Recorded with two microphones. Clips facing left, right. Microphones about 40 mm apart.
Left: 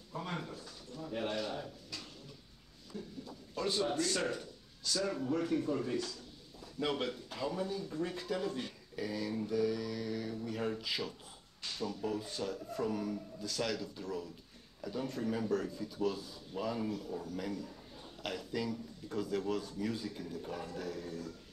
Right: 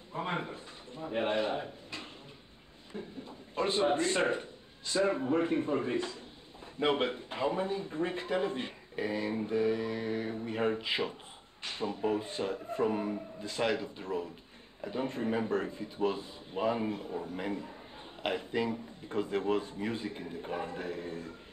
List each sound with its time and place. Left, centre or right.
0.1 s speech: right